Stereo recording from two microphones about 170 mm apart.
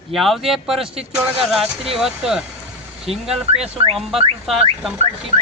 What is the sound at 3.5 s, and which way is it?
Speech, 35° right (ahead or behind).